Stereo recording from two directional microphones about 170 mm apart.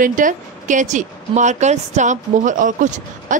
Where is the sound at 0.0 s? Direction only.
50° right (ahead or behind).